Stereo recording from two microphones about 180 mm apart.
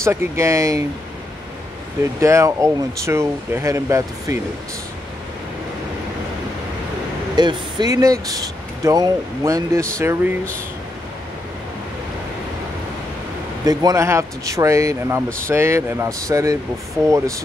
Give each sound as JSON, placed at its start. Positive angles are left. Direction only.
{"t": 0.0, "sound": "speech", "side_deg": -15}
{"t": 2.1, "sound": "speech", "side_deg": -15}
{"t": 7.3, "sound": "speech", "side_deg": -25}
{"t": 13.7, "sound": "speech", "side_deg": -20}